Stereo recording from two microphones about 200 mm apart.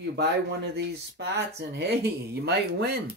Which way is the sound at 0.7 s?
55° right (ahead or behind).